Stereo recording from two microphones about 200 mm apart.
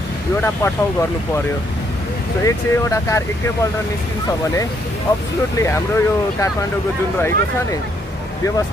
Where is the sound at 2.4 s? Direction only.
15° left (ahead or behind).